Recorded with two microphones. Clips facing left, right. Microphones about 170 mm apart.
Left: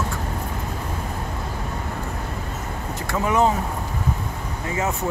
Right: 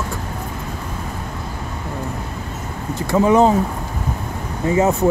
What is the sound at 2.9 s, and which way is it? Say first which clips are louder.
Speech: right 9 dB; 30° right (ahead or behind).